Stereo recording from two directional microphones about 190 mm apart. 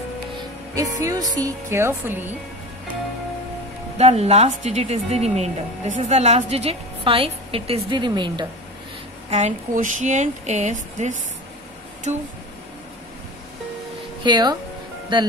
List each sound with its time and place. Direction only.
0.7 s speech: 15° right (ahead or behind)
4.0 s a woman's voice: 35° right (ahead or behind)
9.3 s a woman's voice: 40° right (ahead or behind)
14.2 s speech: 25° right (ahead or behind)